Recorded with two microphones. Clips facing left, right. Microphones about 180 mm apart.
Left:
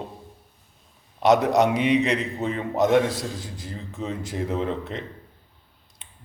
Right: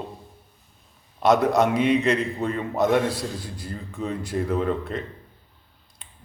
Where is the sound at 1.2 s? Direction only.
15° left (ahead or behind).